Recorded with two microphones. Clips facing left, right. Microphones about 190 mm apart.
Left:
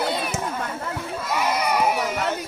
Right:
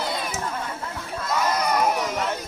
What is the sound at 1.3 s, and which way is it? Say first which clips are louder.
Crowd: even; 10° left (ahead or behind).